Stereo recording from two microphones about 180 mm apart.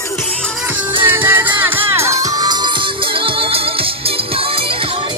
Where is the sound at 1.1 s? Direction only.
10° right (ahead or behind); by 4.6 s 30° right (ahead or behind).